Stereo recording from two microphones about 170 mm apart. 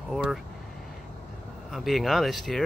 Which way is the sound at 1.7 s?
Centre (ahead or behind).